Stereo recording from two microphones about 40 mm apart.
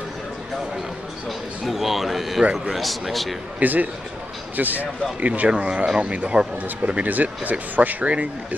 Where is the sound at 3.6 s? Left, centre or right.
Right.